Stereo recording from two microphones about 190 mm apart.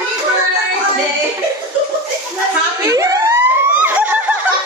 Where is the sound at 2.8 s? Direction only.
15° right (ahead or behind).